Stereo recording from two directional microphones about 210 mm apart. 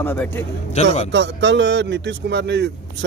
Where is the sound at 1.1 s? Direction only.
60° right (ahead or behind).